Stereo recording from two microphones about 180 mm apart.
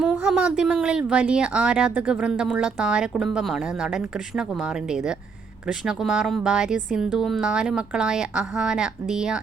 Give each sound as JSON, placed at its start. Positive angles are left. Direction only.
{"t": 0.0, "sound": "speech", "side_deg": -5}